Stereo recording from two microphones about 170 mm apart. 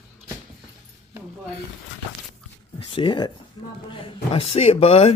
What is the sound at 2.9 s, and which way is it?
Speech, 30° left (ahead or behind).